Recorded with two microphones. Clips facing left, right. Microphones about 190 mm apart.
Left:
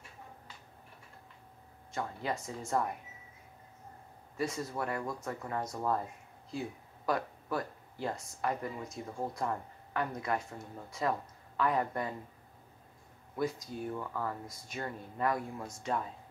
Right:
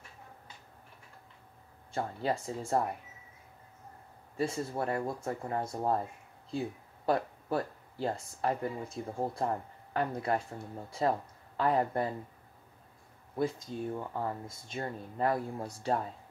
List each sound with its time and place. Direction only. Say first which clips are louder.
1.9 s speech: right 4 dB; 30° right (ahead or behind)
4.4 s speech: right 3 dB; 30° right (ahead or behind)
7.1 s speech: right 3 dB; 30° right (ahead or behind)
13.4 s speech: right 2 dB; 25° right (ahead or behind)